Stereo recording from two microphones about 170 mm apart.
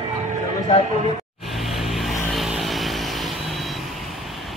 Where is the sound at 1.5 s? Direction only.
Centre (ahead or behind).